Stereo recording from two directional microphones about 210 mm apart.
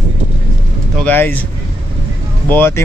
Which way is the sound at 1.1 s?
10° left (ahead or behind).